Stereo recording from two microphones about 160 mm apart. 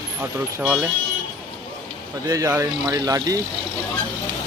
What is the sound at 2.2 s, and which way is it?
Speech, 20° right (ahead or behind).